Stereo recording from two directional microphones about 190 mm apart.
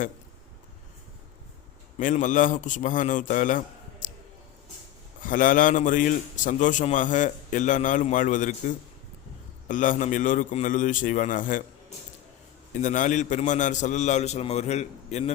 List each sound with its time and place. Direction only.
2.0 s a man's voice: 45° left (ahead or behind)
4.0 s clicking: 40° left (ahead or behind)
5.2 s a man's voice: 45° left (ahead or behind)
12.7 s a man's voice: 40° left (ahead or behind)